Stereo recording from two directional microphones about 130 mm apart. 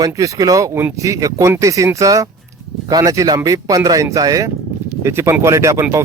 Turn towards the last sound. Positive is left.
turn(degrees=-25)  # may be behind; listen again after turning